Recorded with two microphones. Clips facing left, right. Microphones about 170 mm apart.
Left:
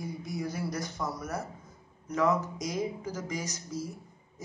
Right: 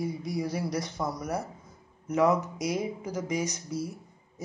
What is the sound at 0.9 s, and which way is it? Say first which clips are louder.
Speech: right 3 dB; 15° right (ahead or behind).